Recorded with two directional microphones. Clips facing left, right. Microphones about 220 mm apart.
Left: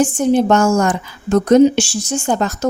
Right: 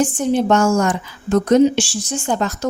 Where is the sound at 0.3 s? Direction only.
45° left (ahead or behind).